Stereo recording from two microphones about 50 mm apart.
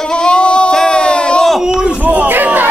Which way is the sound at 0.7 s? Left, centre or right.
Centre.